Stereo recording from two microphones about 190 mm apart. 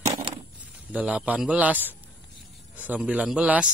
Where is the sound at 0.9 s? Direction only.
5° right (ahead or behind).